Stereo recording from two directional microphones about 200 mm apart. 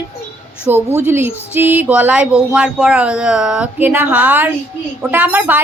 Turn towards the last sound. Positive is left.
turn(degrees=-5)  # may be behind; listen again after turning